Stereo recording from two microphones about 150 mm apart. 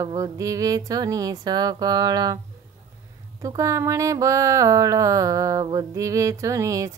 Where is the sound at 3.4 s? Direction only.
20° right (ahead or behind).